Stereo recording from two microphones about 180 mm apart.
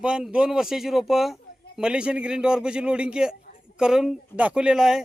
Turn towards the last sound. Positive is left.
turn(degrees=-5)  # may be behind; listen again after turning